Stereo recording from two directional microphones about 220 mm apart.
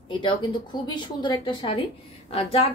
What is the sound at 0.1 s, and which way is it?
A woman's voice, 20° left (ahead or behind).